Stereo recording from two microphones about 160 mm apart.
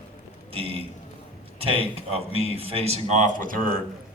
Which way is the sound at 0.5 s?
35° right (ahead or behind).